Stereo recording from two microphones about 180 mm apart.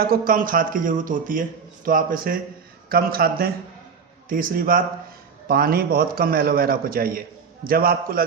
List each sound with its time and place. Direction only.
0.0 s a man's voice: 55° right (ahead or behind)